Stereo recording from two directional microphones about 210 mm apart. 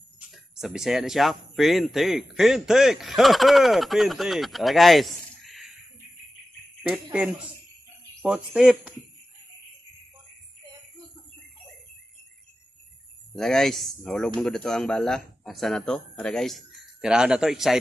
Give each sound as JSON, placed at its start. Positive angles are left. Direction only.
{"t": 0.3, "sound": "speech", "side_deg": 0}
{"t": 6.8, "sound": "speech", "side_deg": -5}
{"t": 13.3, "sound": "speech", "side_deg": 0}